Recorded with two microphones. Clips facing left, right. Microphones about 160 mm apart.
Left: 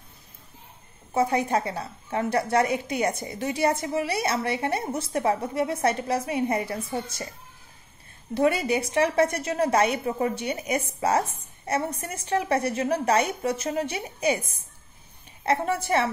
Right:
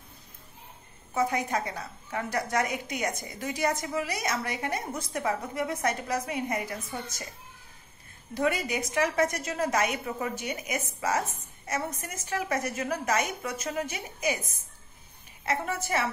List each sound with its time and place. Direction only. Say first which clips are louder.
1.1 s a woman's voice: left 5 dB; 30° left (ahead or behind)
8.4 s a woman's voice: left 5 dB; 30° left (ahead or behind)
15.4 s a woman's voice: left 6 dB; 35° left (ahead or behind)